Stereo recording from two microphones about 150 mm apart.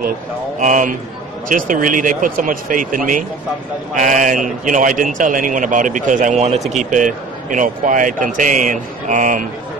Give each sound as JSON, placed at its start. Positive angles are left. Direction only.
{"t": 0.6, "sound": "a man's voice", "side_deg": -60}